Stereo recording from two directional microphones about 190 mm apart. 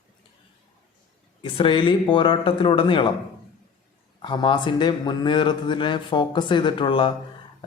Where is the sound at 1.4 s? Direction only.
25° left (ahead or behind).